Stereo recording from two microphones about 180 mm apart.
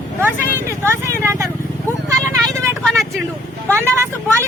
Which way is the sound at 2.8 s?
Centre (ahead or behind).